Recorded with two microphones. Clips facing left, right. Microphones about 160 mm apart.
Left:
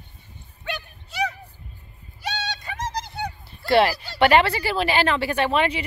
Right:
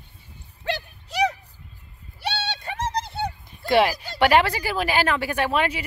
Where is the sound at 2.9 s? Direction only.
25° right (ahead or behind).